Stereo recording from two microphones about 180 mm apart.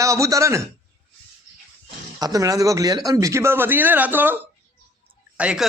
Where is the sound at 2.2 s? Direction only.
20° right (ahead or behind).